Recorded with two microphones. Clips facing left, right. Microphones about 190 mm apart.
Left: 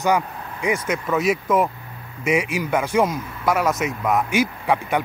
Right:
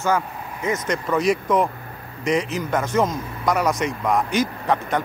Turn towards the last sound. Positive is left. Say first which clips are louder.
# left 1 dB
turn(degrees=10)  # may be behind; listen again after turning